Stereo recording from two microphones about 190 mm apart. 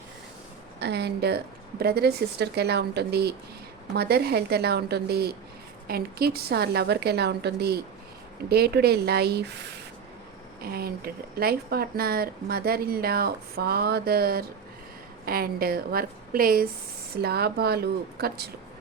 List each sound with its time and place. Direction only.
0.8 s a woman's voice: 60° right (ahead or behind)